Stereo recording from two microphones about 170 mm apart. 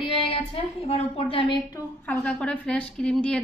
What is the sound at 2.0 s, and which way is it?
A woman's voice, 10° left (ahead or behind).